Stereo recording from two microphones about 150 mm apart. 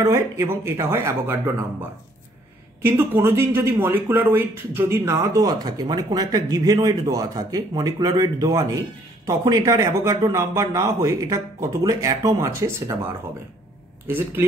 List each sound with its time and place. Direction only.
0.0 s speech: 20° right (ahead or behind)